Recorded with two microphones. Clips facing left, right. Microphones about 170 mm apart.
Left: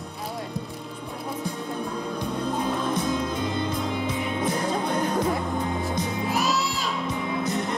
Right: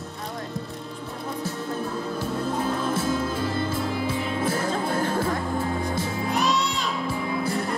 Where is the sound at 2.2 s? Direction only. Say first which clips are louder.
Even; 5° right (ahead or behind).